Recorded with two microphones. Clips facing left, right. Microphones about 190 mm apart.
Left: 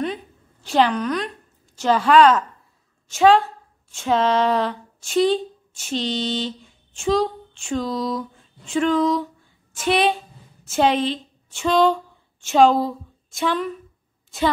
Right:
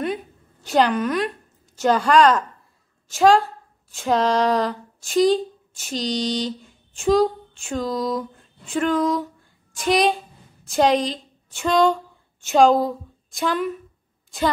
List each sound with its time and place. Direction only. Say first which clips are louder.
0.7 s a woman's voice: even; centre (ahead or behind)
5.9 s mantra: even; 40° right (ahead or behind)
6.6 s a woman's voice: right 2 dB; centre (ahead or behind)